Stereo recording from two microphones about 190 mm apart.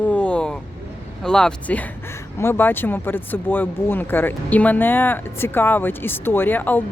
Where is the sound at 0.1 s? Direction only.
5° left (ahead or behind).